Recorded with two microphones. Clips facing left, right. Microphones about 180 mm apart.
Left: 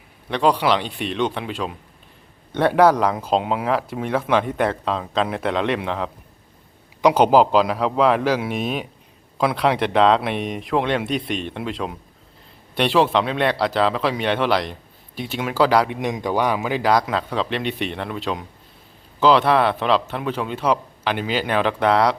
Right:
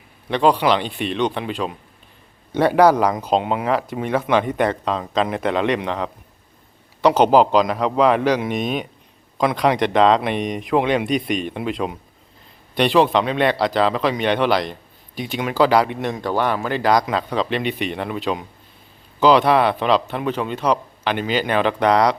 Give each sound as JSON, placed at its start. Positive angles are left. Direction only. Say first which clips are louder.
{"t": 0.3, "sound": "speech", "louder": "right 2 dB", "side_deg": 0}
{"t": 16.0, "sound": "speech", "louder": "even", "side_deg": 15}